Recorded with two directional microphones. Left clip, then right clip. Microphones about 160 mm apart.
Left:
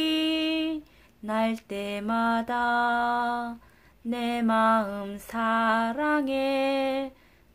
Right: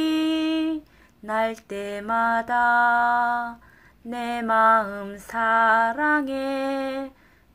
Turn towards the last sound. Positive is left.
turn(degrees=25)  # may be behind; listen again after turning